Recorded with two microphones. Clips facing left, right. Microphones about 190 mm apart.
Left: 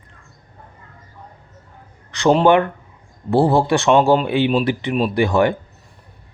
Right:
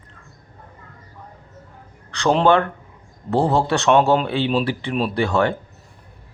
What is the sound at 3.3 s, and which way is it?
Speech, 15° left (ahead or behind).